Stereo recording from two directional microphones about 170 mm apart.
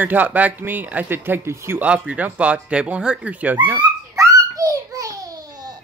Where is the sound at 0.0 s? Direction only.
10° right (ahead or behind).